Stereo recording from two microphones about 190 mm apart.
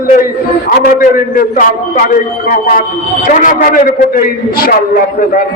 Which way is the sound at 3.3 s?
45° left (ahead or behind).